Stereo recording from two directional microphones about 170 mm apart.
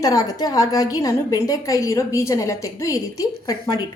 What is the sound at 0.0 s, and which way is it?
A woman's voice, 20° left (ahead or behind).